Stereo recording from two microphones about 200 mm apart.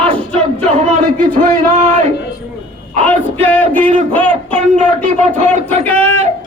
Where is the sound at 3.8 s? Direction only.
40° right (ahead or behind).